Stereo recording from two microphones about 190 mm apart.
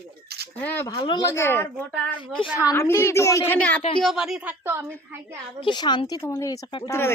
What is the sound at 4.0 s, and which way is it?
Speech, centre (ahead or behind).